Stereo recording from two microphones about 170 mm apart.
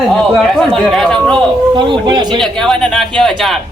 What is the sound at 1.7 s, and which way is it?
Speech, 30° right (ahead or behind).